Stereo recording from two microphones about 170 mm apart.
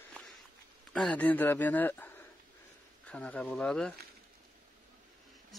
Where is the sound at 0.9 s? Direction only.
5° left (ahead or behind).